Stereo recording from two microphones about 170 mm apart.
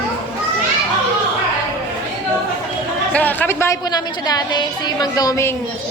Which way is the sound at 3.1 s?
10° left (ahead or behind).